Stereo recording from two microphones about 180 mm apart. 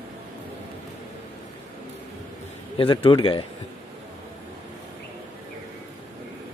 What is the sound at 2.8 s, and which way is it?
Speech, 30° left (ahead or behind).